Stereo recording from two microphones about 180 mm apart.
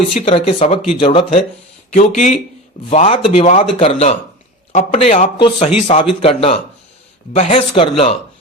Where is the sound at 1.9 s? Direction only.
45° left (ahead or behind).